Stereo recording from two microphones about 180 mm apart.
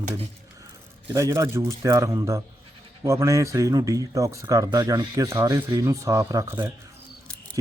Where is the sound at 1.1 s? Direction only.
15° right (ahead or behind).